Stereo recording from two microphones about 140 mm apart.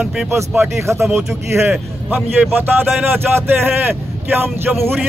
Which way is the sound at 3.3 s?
15° right (ahead or behind).